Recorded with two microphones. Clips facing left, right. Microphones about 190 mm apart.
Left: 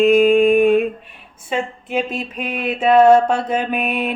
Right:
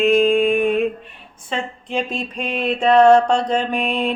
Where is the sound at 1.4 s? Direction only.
5° left (ahead or behind).